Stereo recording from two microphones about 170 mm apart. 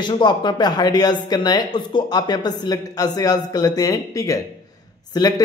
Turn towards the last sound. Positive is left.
turn(degrees=25)  # may be behind; listen again after turning